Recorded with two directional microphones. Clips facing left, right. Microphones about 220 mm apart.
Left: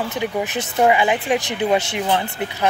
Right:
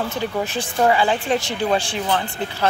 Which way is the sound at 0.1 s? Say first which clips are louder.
Left 1 dB; 20° left (ahead or behind).